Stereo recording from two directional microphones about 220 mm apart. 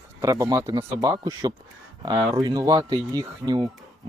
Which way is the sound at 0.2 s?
15° right (ahead or behind).